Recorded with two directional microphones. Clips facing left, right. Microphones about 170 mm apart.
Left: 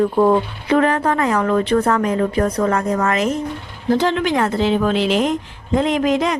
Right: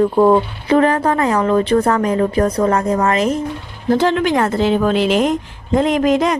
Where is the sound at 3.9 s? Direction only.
50° right (ahead or behind).